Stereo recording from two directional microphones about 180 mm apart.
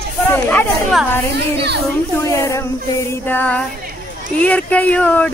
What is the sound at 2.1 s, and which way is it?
Speech, 15° left (ahead or behind).